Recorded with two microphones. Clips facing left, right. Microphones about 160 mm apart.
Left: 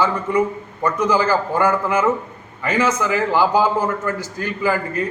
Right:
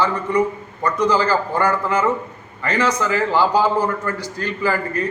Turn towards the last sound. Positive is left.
turn(degrees=15)  # may be behind; listen again after turning